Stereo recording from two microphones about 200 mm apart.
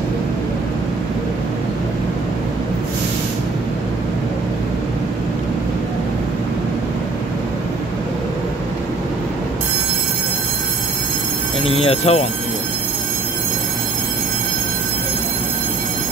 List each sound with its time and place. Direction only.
11.6 s speech: 30° left (ahead or behind)